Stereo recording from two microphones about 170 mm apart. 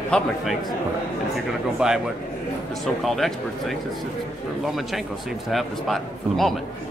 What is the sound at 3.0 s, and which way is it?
Speech, centre (ahead or behind).